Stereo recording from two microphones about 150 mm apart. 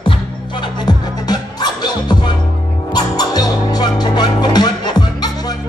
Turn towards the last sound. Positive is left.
turn(degrees=30)  # may be behind; listen again after turning